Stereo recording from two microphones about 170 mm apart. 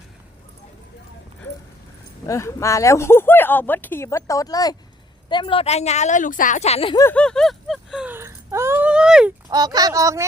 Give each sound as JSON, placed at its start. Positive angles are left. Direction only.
{"t": 2.2, "sound": "speech", "side_deg": 20}
{"t": 6.9, "sound": "whimper", "side_deg": 15}
{"t": 9.5, "sound": "speech", "side_deg": -25}